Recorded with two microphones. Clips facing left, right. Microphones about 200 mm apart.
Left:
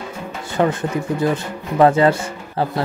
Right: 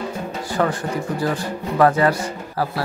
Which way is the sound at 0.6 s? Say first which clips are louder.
Left 3 dB; 20° left (ahead or behind).